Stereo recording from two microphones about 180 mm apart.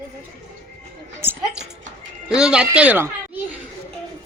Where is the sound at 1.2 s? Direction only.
10° right (ahead or behind).